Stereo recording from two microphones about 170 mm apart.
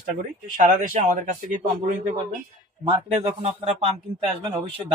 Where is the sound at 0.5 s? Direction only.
50° right (ahead or behind).